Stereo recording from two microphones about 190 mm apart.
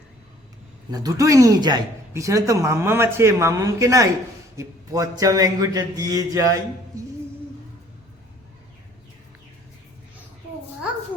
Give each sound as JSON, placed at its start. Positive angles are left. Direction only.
{"t": 0.9, "sound": "a man's voice", "side_deg": -20}